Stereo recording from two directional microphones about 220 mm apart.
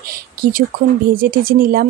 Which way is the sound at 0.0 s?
40° right (ahead or behind).